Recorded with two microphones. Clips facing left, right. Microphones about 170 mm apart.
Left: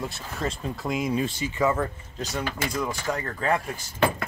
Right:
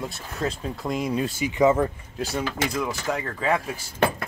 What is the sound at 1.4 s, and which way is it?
Speech, 15° right (ahead or behind).